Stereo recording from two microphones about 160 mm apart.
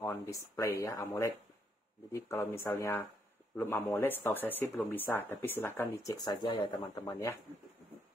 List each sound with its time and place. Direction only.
0.0 s speech: 20° left (ahead or behind)